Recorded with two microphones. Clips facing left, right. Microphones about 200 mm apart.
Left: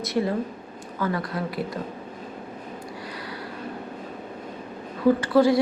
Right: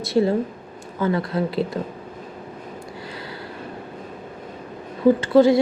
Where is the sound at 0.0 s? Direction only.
30° right (ahead or behind).